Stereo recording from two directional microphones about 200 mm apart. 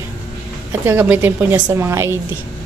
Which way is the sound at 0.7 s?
10° right (ahead or behind).